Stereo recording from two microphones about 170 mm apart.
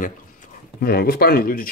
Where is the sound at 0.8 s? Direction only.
65° left (ahead or behind).